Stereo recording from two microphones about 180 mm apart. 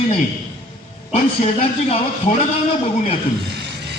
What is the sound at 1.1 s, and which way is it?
Speech, 35° left (ahead or behind).